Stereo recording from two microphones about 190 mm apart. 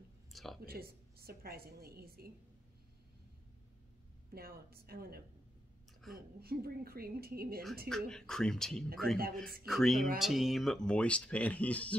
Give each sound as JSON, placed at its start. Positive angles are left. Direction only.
{"t": 0.3, "sound": "a sound", "side_deg": 0}
{"t": 0.7, "sound": "a woman's voice", "side_deg": -55}
{"t": 4.3, "sound": "a woman's voice", "side_deg": -55}
{"t": 6.0, "sound": "a woman's voice", "side_deg": 0}
{"t": 6.4, "sound": "a woman's voice", "side_deg": -55}
{"t": 7.9, "sound": "speech", "side_deg": 5}